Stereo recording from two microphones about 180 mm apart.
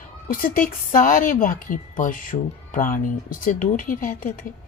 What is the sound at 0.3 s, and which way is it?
Speech, 50° left (ahead or behind).